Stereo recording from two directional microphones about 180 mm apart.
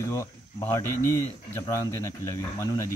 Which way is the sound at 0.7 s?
15° left (ahead or behind).